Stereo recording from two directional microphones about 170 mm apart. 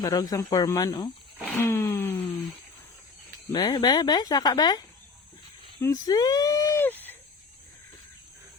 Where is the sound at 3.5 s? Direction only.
25° left (ahead or behind).